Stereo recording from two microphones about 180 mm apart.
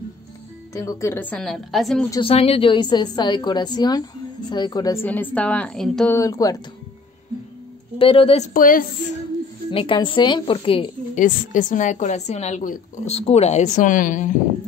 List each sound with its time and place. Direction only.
0.7 s a woman's voice: 15° left (ahead or behind); by 2.0 s centre (ahead or behind)
2.2 s a woman's voice: 35° left (ahead or behind)
5.0 s a woman's voice: 10° left (ahead or behind)
6.1 s a woman's voice: 20° left (ahead or behind)
8.0 s a woman's voice: 30° left (ahead or behind)
8.5 s a woman's voice: 50° left (ahead or behind)
9.7 s a woman's voice: 30° left (ahead or behind)
11.1 s a woman's voice: 45° left (ahead or behind)